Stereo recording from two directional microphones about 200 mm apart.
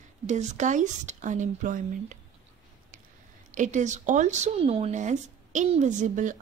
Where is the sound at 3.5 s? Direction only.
40° right (ahead or behind).